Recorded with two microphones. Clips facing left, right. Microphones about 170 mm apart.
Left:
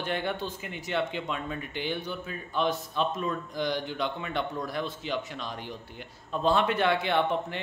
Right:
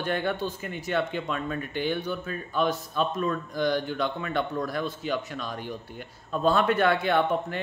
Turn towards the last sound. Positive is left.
turn(degrees=20)  # may be behind; listen again after turning